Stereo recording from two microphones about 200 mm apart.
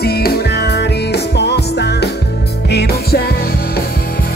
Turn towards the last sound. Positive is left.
turn(degrees=55)  # may be behind; listen again after turning